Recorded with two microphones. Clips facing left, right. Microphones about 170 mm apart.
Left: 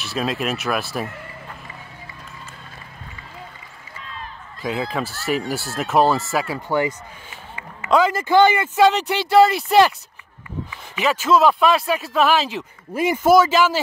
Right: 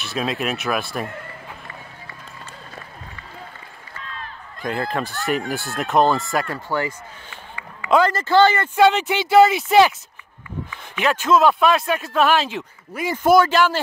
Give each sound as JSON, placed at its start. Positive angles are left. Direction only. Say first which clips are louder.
{"t": 0.0, "sound": "speech", "louder": "even", "side_deg": 0}
{"t": 4.6, "sound": "speech", "louder": "even", "side_deg": 0}
{"t": 6.7, "sound": "speech", "louder": "left 4 dB", "side_deg": 20}
{"t": 7.9, "sound": "speech", "louder": "even", "side_deg": 5}
{"t": 8.7, "sound": "speech", "louder": "even", "side_deg": 0}
{"t": 11.0, "sound": "speech", "louder": "even", "side_deg": 0}